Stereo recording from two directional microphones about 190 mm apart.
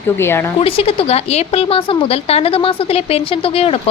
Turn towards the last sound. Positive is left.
turn(degrees=30)  # may be behind; listen again after turning